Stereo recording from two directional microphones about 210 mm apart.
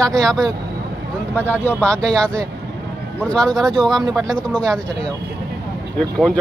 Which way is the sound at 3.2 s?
5° left (ahead or behind).